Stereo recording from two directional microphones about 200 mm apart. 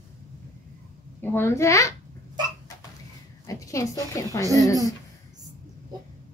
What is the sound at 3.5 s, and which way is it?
A woman's voice, 15° left (ahead or behind).